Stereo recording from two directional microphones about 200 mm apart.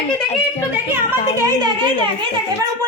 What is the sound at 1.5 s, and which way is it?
Speech, 20° right (ahead or behind).